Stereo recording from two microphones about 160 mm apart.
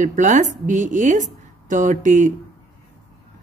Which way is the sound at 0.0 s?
50° right (ahead or behind).